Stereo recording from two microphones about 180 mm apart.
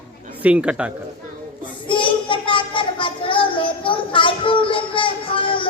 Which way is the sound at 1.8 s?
30° left (ahead or behind).